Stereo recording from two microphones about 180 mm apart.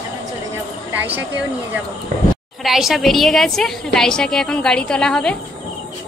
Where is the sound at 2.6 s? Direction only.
Centre (ahead or behind).